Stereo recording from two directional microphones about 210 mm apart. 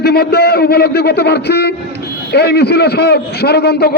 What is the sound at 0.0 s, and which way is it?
A man's voice, 50° left (ahead or behind).